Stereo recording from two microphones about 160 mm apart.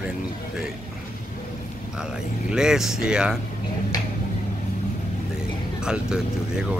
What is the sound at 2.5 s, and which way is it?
Speech, 5° right (ahead or behind).